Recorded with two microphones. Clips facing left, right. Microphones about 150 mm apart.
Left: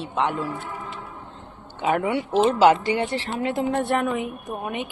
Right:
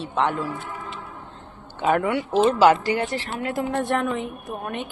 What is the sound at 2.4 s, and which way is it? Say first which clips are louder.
A woman's voice: even; 25° left (ahead or behind).